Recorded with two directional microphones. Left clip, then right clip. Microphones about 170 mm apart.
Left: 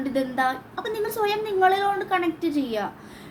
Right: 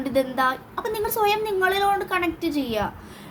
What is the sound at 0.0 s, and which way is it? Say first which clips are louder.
A woman's voice: right 2 dB; 15° right (ahead or behind).